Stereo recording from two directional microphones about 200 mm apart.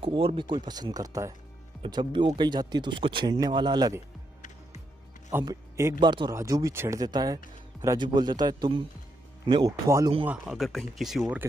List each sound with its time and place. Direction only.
0.0 s speech: 25° right (ahead or behind)
5.3 s a man's voice: 15° right (ahead or behind)
10.2 s speech: 5° right (ahead or behind)